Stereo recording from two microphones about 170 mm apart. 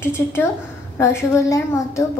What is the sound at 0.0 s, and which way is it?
A woman's voice, 15° left (ahead or behind).